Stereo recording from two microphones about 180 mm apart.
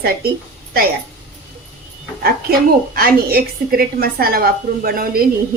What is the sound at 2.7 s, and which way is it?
A woman's voice, 55° right (ahead or behind).